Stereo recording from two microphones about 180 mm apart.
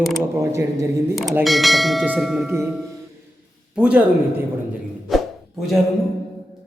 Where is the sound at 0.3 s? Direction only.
15° right (ahead or behind).